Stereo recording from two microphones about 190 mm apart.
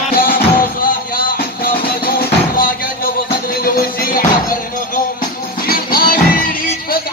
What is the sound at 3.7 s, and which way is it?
Music, 50° left (ahead or behind).